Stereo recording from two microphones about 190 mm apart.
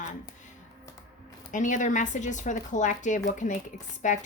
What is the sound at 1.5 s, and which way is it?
A woman's voice, 40° left (ahead or behind).